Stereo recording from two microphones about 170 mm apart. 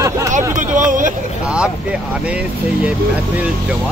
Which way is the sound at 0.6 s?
50° right (ahead or behind).